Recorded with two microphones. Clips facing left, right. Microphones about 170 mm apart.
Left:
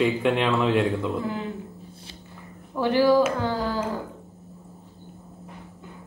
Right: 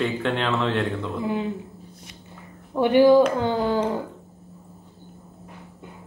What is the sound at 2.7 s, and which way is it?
A woman's voice, 20° right (ahead or behind).